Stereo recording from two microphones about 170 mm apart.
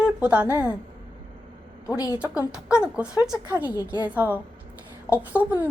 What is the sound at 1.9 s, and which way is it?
Speech, 20° left (ahead or behind).